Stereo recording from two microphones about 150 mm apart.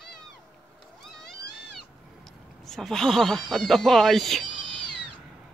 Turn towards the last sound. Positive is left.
turn(degrees=-35)  # may be behind; listen again after turning